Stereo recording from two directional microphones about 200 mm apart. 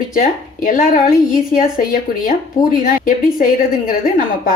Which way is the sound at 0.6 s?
40° left (ahead or behind).